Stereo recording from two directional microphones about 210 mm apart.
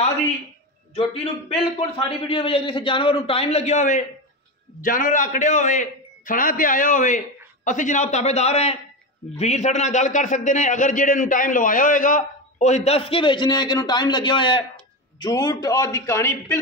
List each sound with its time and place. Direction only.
0.9 s a man's voice: 30° left (ahead or behind); by 16.5 s 15° left (ahead or behind)